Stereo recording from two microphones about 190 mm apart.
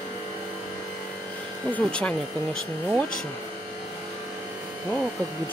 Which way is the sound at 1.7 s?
5° left (ahead or behind).